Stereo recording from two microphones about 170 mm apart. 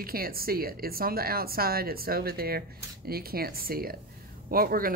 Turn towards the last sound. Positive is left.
turn(degrees=-60)  # may be behind; listen again after turning